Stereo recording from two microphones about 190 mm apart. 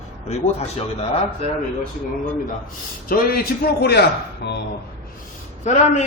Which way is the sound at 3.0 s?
50° left (ahead or behind).